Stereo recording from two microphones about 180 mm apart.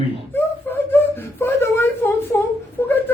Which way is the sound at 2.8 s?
15° left (ahead or behind).